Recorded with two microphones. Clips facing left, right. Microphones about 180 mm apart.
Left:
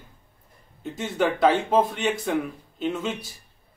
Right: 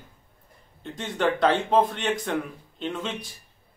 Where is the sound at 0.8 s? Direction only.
5° left (ahead or behind).